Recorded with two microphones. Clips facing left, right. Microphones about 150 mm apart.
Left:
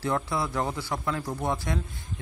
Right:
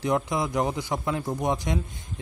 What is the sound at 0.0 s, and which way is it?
A man's voice, 15° right (ahead or behind).